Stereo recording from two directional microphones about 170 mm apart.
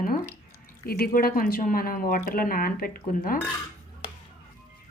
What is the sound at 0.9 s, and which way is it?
Speech, 60° left (ahead or behind).